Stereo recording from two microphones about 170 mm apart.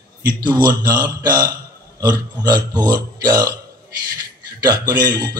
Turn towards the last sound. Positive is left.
turn(degrees=-25)  # may be behind; listen again after turning